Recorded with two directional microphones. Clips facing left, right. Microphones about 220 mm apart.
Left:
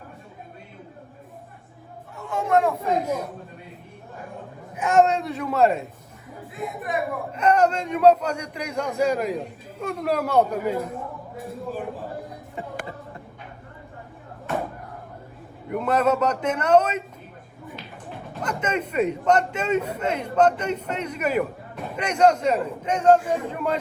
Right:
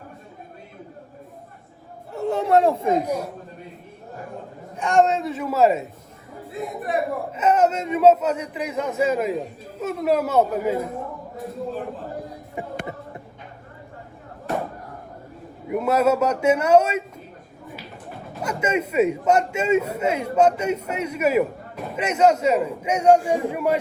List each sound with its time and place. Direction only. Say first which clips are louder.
2.1 s chatter: right 3 dB; 40° right (ahead or behind)
2.8 s a man's voice: right 3 dB; 15° right (ahead or behind)
4.8 s speech: even; centre (ahead or behind)
6.5 s speech: right 3 dB; 30° right (ahead or behind)
7.3 s speech: even; 5° right (ahead or behind)
12.6 s a man's voice: right 2 dB; 15° right (ahead or behind)
15.7 s a man's voice: right 2 dB; 10° right (ahead or behind)
18.3 s a man's voice: right 3 dB; 10° right (ahead or behind)